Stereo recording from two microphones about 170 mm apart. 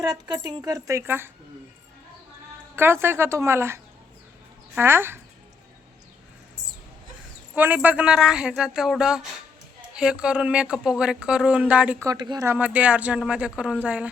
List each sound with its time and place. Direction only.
0.0 s a woman's voice: 20° right (ahead or behind)
2.7 s speech: 15° right (ahead or behind)
7.5 s speech: 10° right (ahead or behind)
12.0 s a woman's voice: 25° right (ahead or behind)
12.5 s speech: 10° right (ahead or behind)